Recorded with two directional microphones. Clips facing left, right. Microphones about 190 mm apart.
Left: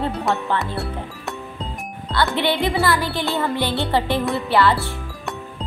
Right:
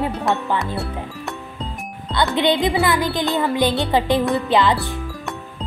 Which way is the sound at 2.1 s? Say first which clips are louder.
Right 2 dB; 20° right (ahead or behind).